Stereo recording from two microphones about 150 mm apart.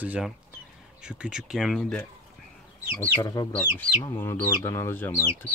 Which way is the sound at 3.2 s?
25° left (ahead or behind).